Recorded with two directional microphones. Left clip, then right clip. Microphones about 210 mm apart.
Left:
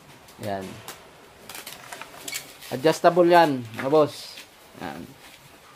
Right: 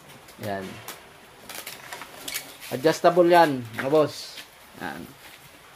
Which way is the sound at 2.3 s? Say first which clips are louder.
Even; 10° left (ahead or behind).